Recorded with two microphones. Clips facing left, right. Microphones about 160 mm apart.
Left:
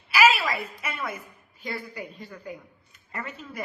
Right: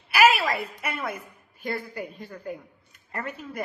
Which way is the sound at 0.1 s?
60° right (ahead or behind).